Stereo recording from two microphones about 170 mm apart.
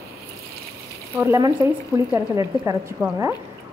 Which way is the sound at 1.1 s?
15° right (ahead or behind).